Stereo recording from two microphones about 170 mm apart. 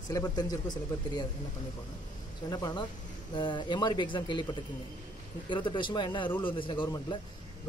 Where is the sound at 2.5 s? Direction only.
25° left (ahead or behind).